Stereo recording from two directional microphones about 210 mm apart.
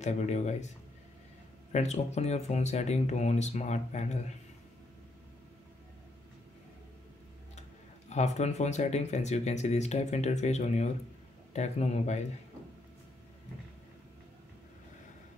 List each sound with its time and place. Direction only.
0.0 s speech: 35° left (ahead or behind)
1.7 s speech: 30° left (ahead or behind)
8.1 s speech: 35° left (ahead or behind)